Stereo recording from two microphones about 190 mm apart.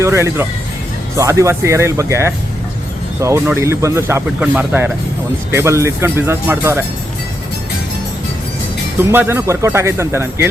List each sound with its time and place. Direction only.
0.0 s speech: 15° right (ahead or behind)
9.0 s speech: 10° right (ahead or behind)